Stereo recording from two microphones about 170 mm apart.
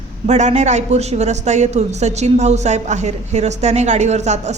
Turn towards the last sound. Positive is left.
turn(degrees=-40)  # may be behind; listen again after turning